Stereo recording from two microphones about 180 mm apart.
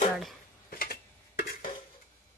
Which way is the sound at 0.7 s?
55° left (ahead or behind).